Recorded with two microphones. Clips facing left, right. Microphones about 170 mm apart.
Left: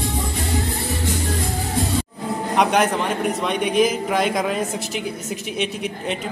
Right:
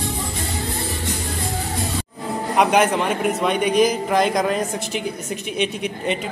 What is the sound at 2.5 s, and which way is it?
A man's voice, centre (ahead or behind).